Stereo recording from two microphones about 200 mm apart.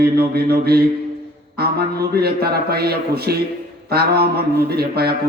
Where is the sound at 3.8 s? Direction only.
50° right (ahead or behind).